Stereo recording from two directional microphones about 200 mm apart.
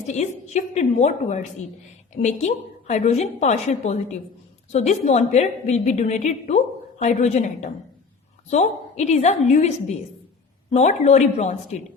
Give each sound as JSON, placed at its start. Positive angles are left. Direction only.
{"t": 0.1, "sound": "a woman's voice", "side_deg": 35}